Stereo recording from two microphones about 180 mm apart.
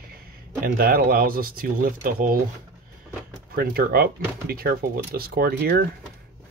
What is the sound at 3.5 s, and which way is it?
Speech, 55° right (ahead or behind).